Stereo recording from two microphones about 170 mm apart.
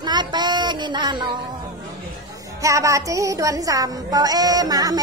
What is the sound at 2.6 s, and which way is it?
Speech, 20° right (ahead or behind).